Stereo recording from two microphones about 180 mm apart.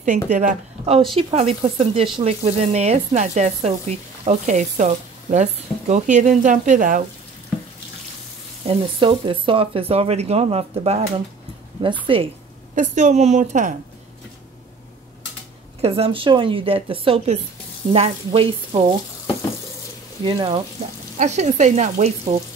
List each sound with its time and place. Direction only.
0.3 s speech: 40° right (ahead or behind)
8.6 s speech: 30° right (ahead or behind)
12.1 s speech: 30° right (ahead or behind)
12.7 s speech: 40° right (ahead or behind)
15.8 s speech: 35° right (ahead or behind)
20.2 s speech: 25° right (ahead or behind)
21.2 s speech: 40° right (ahead or behind)